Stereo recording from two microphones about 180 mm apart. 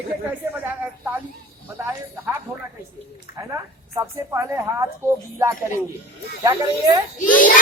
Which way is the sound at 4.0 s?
15° right (ahead or behind).